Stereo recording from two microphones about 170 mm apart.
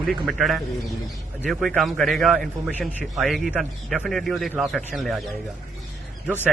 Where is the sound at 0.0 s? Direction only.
Centre (ahead or behind).